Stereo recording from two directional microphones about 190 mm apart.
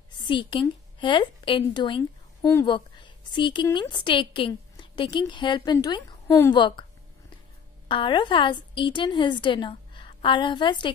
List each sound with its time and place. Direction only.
0.1 s a woman's voice: 25° left (ahead or behind)
7.9 s a woman's voice: 25° left (ahead or behind)